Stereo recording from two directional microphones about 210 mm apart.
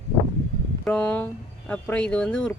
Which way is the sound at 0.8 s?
5° left (ahead or behind).